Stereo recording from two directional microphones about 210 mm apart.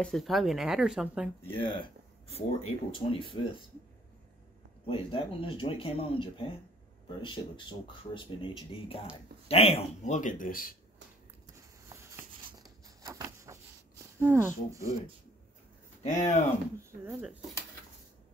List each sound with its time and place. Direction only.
0.0 s speech: centre (ahead or behind)
1.5 s speech: 25° left (ahead or behind)
4.8 s speech: 25° left (ahead or behind); by 10.8 s 40° left (ahead or behind)
11.9 s a sound: 10° right (ahead or behind)
14.2 s speech: 10° right (ahead or behind)
16.0 s speech: 35° left (ahead or behind)
17.0 s speech: 5° right (ahead or behind)